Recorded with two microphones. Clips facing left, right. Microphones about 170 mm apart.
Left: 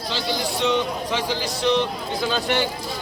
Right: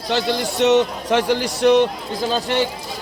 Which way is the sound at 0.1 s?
60° right (ahead or behind).